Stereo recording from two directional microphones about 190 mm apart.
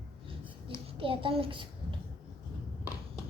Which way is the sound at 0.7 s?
25° right (ahead or behind).